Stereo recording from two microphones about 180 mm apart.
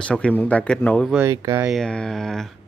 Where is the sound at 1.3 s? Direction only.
20° right (ahead or behind).